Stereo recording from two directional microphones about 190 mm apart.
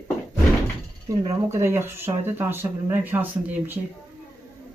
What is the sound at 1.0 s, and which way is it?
Speech, 15° right (ahead or behind).